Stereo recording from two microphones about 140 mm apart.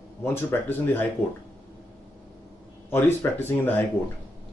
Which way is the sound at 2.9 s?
15° left (ahead or behind).